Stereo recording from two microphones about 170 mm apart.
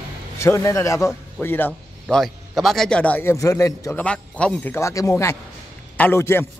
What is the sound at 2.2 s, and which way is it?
A man's voice, centre (ahead or behind).